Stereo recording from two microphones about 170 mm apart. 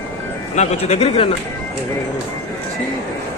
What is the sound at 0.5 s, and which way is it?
Speech, 40° left (ahead or behind).